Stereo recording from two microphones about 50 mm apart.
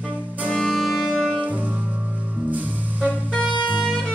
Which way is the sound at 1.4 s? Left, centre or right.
Right.